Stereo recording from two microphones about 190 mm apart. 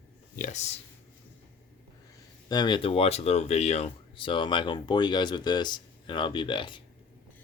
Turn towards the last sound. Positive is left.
turn(degrees=25)  # may be behind; listen again after turning